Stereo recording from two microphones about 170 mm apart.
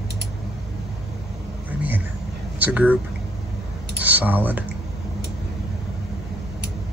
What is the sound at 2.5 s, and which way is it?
Speech, 10° right (ahead or behind).